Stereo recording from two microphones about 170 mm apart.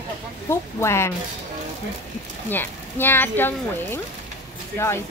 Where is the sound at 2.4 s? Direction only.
10° left (ahead or behind).